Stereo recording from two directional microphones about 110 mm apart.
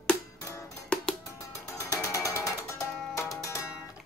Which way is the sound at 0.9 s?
10° left (ahead or behind).